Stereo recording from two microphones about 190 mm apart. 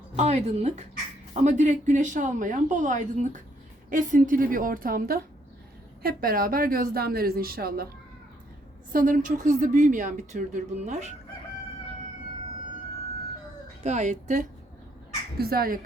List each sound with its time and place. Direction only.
0.2 s a woman's voice: 35° right (ahead or behind); by 7.9 s 50° right (ahead or behind)
8.9 s a woman's voice: 45° right (ahead or behind)
13.8 s a woman's voice: 40° right (ahead or behind)
15.4 s a woman's voice: 50° right (ahead or behind)